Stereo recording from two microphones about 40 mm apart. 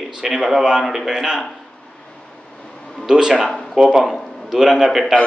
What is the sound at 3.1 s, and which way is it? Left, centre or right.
Speech, centre.